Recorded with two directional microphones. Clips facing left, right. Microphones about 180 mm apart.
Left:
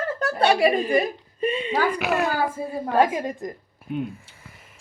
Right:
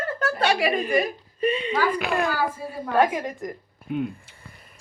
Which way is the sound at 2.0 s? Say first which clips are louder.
Left 1 dB; 5° left (ahead or behind).